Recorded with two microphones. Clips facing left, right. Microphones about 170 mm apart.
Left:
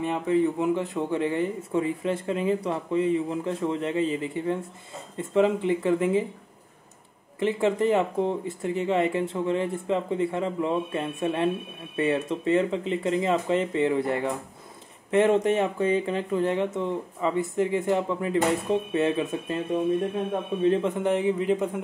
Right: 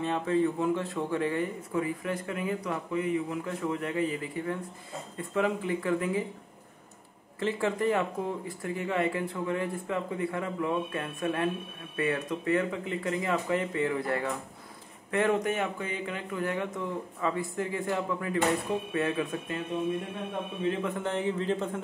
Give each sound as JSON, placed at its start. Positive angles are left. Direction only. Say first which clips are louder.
{"t": 0.0, "sound": "speech", "louder": "left 3 dB", "side_deg": 15}
{"t": 7.3, "sound": "speech", "louder": "left 5 dB", "side_deg": 20}
{"t": 20.8, "sound": "speech", "louder": "left 6 dB", "side_deg": 20}